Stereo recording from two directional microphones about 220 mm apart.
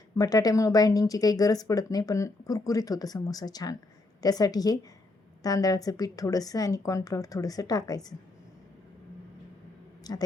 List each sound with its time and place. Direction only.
0.2 s speech: 15° left (ahead or behind)
10.0 s speech: 15° left (ahead or behind)